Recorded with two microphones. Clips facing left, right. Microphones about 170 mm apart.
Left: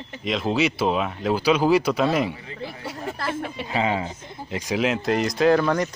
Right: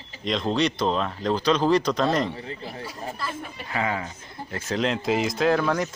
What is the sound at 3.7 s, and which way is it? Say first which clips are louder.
Speech: left 3 dB; 20° left (ahead or behind).